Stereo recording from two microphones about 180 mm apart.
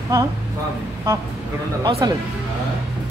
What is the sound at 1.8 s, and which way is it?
Speech, 25° right (ahead or behind).